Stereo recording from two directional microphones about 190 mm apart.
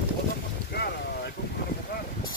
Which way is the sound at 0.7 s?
55° left (ahead or behind).